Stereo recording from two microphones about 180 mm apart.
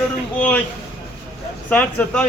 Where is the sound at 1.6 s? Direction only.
10° left (ahead or behind).